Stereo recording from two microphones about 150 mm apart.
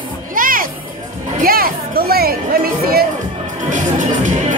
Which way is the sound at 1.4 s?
85° right.